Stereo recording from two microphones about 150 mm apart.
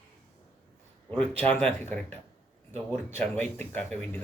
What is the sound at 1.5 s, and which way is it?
Speech, 10° left (ahead or behind).